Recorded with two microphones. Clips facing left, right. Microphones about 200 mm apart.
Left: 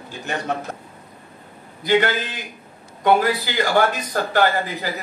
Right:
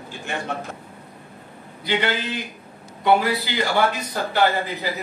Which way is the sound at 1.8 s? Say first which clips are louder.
Left 5 dB; 45° left (ahead or behind).